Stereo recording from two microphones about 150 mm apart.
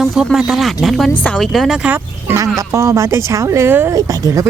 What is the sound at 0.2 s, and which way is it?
Speech, centre (ahead or behind).